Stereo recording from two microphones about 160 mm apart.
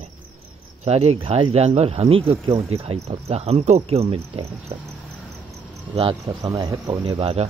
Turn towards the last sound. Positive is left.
turn(degrees=-40)  # may be behind; listen again after turning